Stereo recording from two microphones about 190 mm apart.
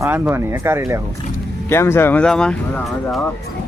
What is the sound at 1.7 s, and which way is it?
Speech, 15° left (ahead or behind).